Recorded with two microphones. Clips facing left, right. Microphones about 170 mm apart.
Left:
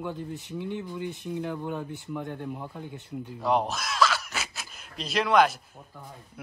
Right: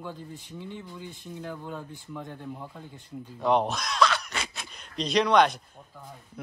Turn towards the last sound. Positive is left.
turn(degrees=5)  # may be behind; listen again after turning